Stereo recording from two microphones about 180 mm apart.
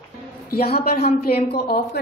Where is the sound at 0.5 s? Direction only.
60° left (ahead or behind).